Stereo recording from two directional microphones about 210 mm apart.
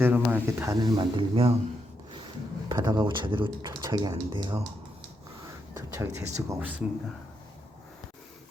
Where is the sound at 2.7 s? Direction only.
20° right (ahead or behind).